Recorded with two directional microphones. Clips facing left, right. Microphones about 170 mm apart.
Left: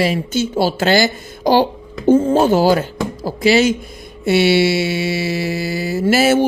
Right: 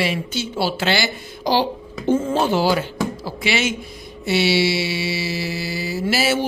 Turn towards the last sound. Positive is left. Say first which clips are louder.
# left 7 dB
turn(degrees=50)  # may be behind; listen again after turning